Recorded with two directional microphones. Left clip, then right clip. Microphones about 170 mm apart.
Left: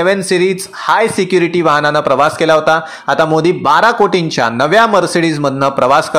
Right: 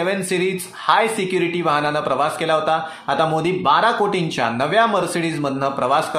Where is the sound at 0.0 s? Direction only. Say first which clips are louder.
Left 9 dB; 40° left (ahead or behind).